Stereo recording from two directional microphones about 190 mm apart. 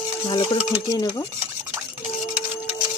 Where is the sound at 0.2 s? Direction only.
30° left (ahead or behind).